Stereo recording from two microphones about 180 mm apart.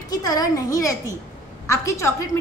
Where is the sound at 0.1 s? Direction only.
20° left (ahead or behind).